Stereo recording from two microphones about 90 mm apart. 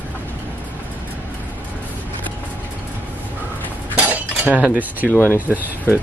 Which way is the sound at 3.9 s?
15° right (ahead or behind).